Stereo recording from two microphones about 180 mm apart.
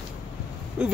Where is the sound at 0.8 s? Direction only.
5° right (ahead or behind).